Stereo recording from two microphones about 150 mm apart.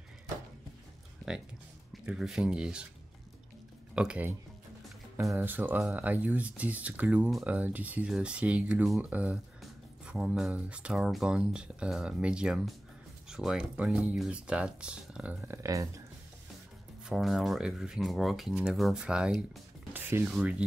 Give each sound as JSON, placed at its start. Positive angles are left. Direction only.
{"t": 2.0, "sound": "speech", "side_deg": -5}
{"t": 3.9, "sound": "speech", "side_deg": -5}
{"t": 15.4, "sound": "speech", "side_deg": -20}
{"t": 17.1, "sound": "speech", "side_deg": 0}
{"t": 19.9, "sound": "rub", "side_deg": -15}
{"t": 20.3, "sound": "speech", "side_deg": -5}